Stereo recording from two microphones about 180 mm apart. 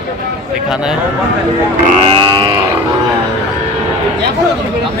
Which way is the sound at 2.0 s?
20° right (ahead or behind).